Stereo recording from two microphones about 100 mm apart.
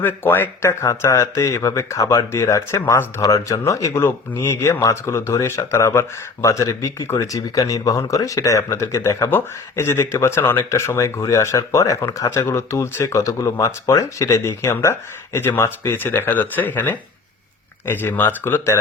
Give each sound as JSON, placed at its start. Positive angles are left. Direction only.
{"t": 0.0, "sound": "speech", "side_deg": 20}